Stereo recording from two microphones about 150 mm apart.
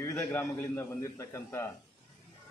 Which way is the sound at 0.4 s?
15° left (ahead or behind).